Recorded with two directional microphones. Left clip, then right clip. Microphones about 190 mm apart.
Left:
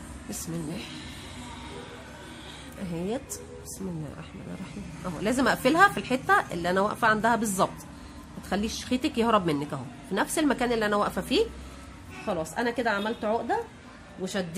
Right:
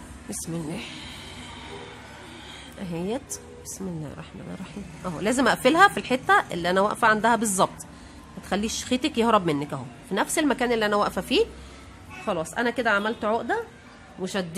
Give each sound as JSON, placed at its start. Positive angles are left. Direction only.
{"t": 0.3, "sound": "a woman's voice", "side_deg": -15}
{"t": 2.8, "sound": "a woman's voice", "side_deg": -15}
{"t": 5.0, "sound": "a woman's voice", "side_deg": -15}